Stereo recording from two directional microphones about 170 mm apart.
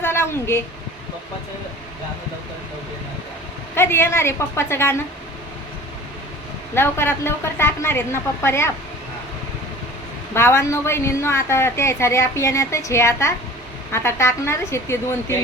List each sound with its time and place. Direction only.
0.0 s a sound: 15° left (ahead or behind)
3.8 s a woman's voice: 15° left (ahead or behind)
6.7 s a woman's voice: 15° left (ahead or behind)
10.3 s a woman's voice: 15° left (ahead or behind)